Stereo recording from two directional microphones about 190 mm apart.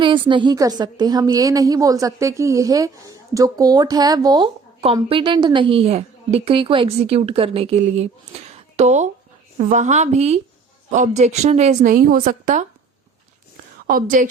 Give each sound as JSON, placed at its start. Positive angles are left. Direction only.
{"t": 0.0, "sound": "a woman's voice", "side_deg": -25}
{"t": 13.8, "sound": "a woman's voice", "side_deg": -45}